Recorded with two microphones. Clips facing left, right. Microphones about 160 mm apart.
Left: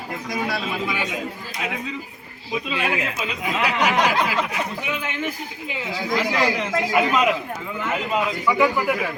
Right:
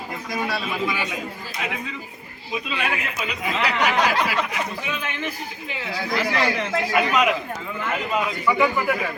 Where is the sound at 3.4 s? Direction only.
15° left (ahead or behind).